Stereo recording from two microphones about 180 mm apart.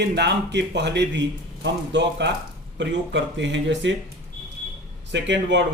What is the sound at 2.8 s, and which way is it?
Speech, 90° right.